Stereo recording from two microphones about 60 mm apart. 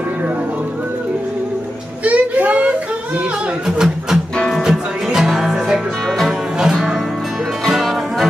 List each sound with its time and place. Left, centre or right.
2.0 s music: right
3.6 s music: centre